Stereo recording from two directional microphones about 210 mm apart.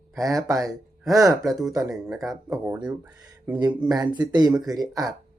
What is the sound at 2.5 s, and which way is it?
Speech, 15° right (ahead or behind).